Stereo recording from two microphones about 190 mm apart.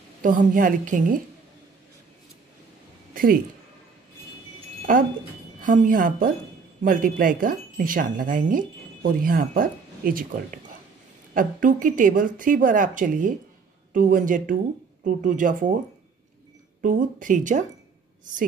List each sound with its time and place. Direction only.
0.2 s a woman's voice: 45° right (ahead or behind)
4.9 s a woman's voice: 45° right (ahead or behind)
16.8 s a woman's voice: 45° right (ahead or behind)